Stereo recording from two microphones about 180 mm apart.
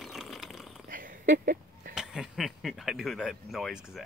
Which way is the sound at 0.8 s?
50° right (ahead or behind).